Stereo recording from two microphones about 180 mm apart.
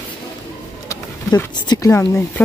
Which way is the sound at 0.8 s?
20° left (ahead or behind).